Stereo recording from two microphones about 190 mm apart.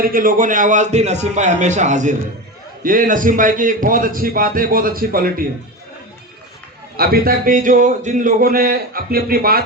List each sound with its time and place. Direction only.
0.0 s a man's voice: 45° right (ahead or behind)
6.9 s speech: 50° right (ahead or behind)